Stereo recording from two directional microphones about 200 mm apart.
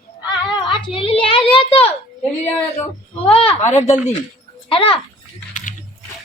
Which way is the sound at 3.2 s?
30° left (ahead or behind).